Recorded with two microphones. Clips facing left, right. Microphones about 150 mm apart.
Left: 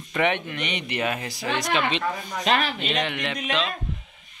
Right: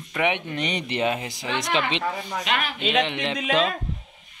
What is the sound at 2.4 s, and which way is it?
Speech, 35° left (ahead or behind).